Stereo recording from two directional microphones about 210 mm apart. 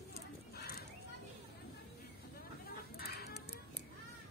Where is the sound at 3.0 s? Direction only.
50° left (ahead or behind).